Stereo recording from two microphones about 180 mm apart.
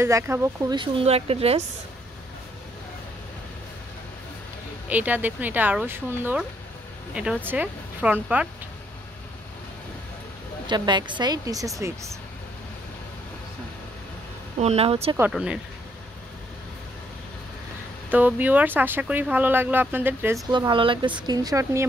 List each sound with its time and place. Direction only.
0.0 s speech: 15° right (ahead or behind); by 1.6 s 35° right (ahead or behind)
4.8 s speech: 10° right (ahead or behind)
7.4 s speech: 10° right (ahead or behind)
10.7 s speech: 25° right (ahead or behind)
14.6 s speech: 35° right (ahead or behind)
15.1 s speech: 5° right (ahead or behind)
18.1 s speech: 10° right (ahead or behind)
20.5 s speech: 25° right (ahead or behind)